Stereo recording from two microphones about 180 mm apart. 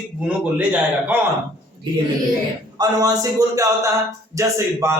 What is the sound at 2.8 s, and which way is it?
A man's voice, 20° right (ahead or behind).